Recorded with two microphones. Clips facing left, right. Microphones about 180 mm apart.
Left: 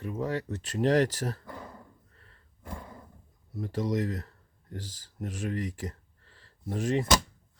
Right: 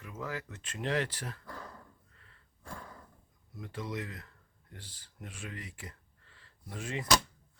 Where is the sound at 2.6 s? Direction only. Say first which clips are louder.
Left 4 dB; 20° left (ahead or behind).